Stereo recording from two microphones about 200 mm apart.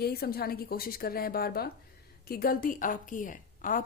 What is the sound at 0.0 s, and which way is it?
A woman's voice, 50° left (ahead or behind).